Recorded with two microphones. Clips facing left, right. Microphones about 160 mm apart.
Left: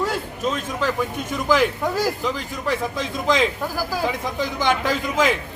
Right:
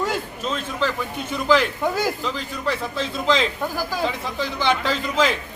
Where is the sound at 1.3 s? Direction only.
15° left (ahead or behind).